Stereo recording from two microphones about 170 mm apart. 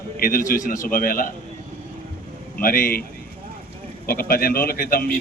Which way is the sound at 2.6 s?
60° left (ahead or behind).